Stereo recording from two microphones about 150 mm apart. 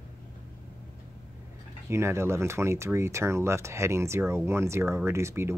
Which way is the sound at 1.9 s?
15° right (ahead or behind).